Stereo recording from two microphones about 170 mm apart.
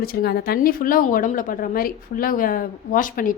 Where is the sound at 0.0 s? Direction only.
65° left (ahead or behind).